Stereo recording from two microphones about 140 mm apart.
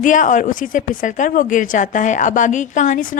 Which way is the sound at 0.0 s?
65° left (ahead or behind).